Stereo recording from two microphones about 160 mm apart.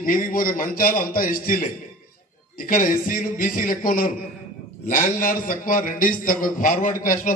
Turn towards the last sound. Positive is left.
turn(degrees=55)  # may be behind; listen again after turning